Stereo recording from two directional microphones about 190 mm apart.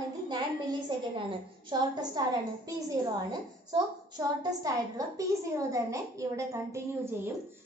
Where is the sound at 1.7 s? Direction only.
20° right (ahead or behind).